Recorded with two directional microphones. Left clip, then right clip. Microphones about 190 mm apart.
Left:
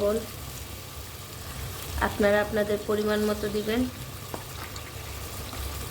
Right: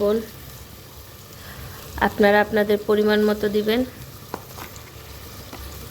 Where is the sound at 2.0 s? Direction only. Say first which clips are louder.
Right 7 dB; 50° right (ahead or behind).